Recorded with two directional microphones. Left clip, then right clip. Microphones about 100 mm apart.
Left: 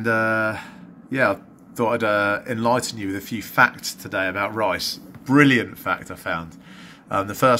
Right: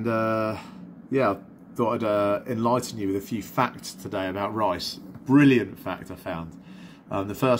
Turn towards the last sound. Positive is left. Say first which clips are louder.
# left 6 dB
turn(degrees=-10)  # may be behind; listen again after turning